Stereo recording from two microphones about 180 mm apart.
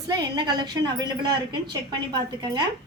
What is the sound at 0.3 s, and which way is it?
Speech, 25° right (ahead or behind).